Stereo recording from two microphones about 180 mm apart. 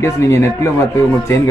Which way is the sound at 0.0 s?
15° left (ahead or behind).